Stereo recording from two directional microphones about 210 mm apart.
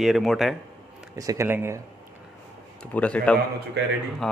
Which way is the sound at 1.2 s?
15° right (ahead or behind).